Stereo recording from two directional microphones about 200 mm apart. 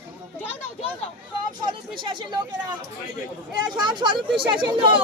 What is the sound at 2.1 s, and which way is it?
Speech, 25° right (ahead or behind).